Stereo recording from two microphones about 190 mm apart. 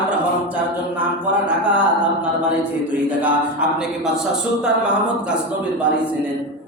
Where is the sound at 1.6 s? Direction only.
5° right (ahead or behind).